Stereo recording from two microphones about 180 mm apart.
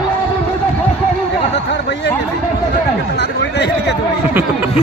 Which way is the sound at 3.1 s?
75° left (ahead or behind).